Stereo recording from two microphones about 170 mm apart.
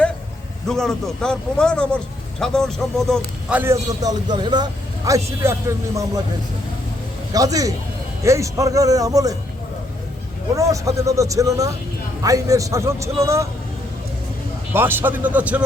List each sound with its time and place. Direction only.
0.7 s speech: centre (ahead or behind)
3.5 s a man's voice: 15° right (ahead or behind)
7.3 s a man's voice: 20° right (ahead or behind)
10.5 s a man's voice: 20° right (ahead or behind)
14.7 s a man's voice: 15° right (ahead or behind)